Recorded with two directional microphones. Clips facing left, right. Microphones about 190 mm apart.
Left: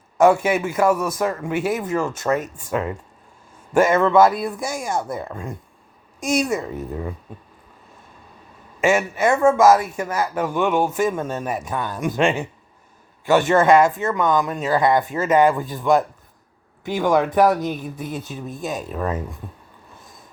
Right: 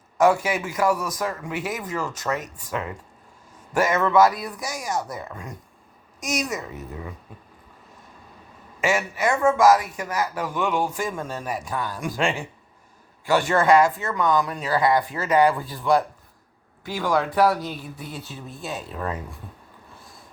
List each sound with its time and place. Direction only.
0.2 s speech: 25° left (ahead or behind)
8.8 s speech: 25° left (ahead or behind)